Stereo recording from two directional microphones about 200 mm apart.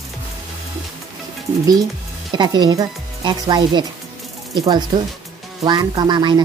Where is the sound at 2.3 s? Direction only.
20° right (ahead or behind).